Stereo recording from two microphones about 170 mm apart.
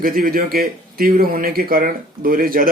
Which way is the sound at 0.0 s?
60° right (ahead or behind).